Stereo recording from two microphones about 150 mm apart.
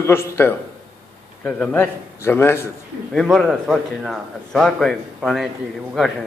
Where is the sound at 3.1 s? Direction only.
Centre (ahead or behind).